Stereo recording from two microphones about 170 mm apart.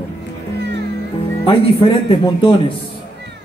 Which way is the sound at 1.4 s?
30° left (ahead or behind).